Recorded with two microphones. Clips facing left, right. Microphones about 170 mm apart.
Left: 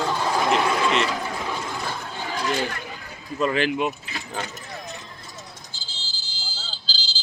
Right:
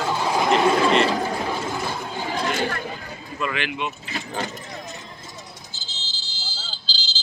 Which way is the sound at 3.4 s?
35° left (ahead or behind).